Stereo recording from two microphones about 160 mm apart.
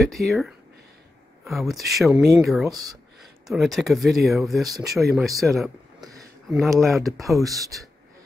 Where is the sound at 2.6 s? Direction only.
25° right (ahead or behind).